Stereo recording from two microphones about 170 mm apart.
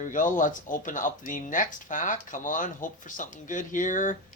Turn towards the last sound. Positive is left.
turn(degrees=50)  # may be behind; listen again after turning